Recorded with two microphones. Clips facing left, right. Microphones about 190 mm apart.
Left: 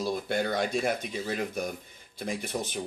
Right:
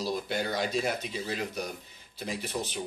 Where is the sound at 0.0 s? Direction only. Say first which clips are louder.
Left 2 dB; 55° left (ahead or behind).